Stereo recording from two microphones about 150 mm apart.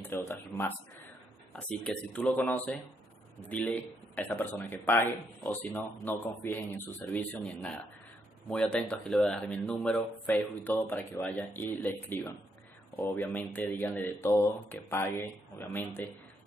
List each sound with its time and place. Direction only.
0.0 s speech: 15° left (ahead or behind)